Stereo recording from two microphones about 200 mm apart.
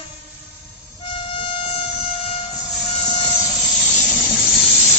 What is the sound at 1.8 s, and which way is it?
Train, centre (ahead or behind).